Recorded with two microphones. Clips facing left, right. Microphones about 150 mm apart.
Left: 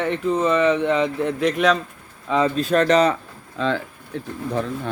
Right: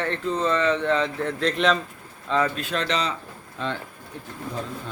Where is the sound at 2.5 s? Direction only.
40° left (ahead or behind).